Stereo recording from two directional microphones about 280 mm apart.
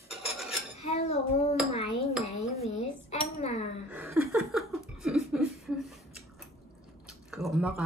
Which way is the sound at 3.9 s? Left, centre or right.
Centre.